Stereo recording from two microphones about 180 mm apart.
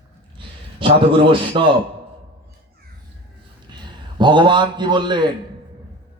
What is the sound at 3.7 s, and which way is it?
A man's voice, 25° right (ahead or behind).